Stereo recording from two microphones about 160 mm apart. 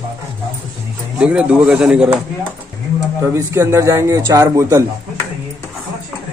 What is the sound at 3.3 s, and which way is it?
A man's voice, 20° right (ahead or behind).